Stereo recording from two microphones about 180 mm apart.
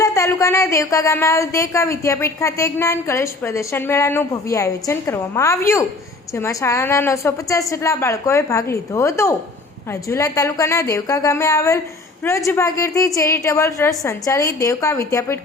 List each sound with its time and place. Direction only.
0.0 s speech: 20° left (ahead or behind)